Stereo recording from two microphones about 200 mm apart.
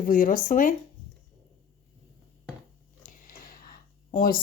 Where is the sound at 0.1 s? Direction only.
40° left (ahead or behind).